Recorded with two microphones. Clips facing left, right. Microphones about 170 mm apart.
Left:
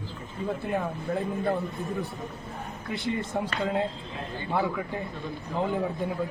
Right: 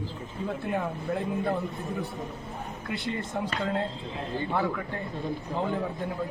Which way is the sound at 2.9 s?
20° left (ahead or behind).